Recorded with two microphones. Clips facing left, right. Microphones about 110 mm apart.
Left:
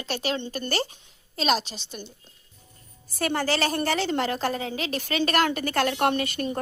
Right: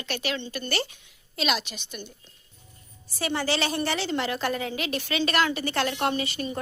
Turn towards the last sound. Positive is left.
turn(degrees=50)  # may be behind; listen again after turning